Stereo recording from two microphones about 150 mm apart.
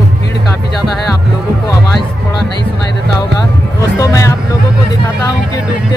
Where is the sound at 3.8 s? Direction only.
20° left (ahead or behind).